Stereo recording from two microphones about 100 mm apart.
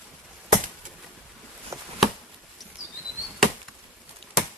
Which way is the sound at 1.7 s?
30° right (ahead or behind).